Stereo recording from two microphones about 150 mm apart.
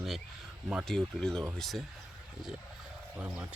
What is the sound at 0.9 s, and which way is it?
Speech, 5° left (ahead or behind).